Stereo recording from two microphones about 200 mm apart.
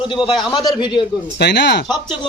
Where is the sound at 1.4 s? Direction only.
55° left (ahead or behind).